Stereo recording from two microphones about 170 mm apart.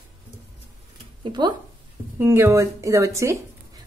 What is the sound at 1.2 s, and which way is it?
Speech, 25° right (ahead or behind).